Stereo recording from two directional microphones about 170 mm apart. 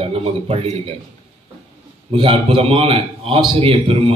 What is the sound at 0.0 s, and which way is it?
Speech, 35° right (ahead or behind).